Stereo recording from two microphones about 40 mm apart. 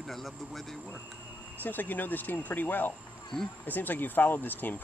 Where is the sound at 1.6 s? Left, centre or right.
Left.